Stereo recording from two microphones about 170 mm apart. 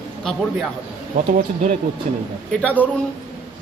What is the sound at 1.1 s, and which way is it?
Speech, 50° right (ahead or behind).